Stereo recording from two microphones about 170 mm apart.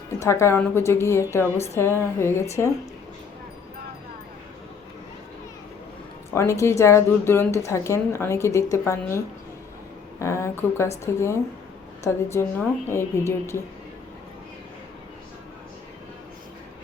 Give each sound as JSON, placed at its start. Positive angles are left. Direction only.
{"t": 0.2, "sound": "speech", "side_deg": 15}
{"t": 6.3, "sound": "speech", "side_deg": 15}